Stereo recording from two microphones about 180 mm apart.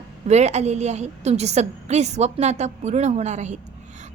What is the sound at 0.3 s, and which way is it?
A woman's voice, 40° right (ahead or behind).